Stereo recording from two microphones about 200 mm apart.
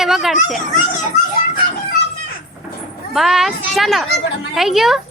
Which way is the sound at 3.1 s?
Centre (ahead or behind).